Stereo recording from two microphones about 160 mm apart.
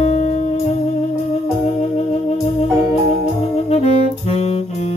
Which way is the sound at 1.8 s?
40° left (ahead or behind).